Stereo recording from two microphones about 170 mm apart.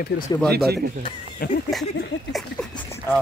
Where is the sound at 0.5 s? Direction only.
65° right (ahead or behind).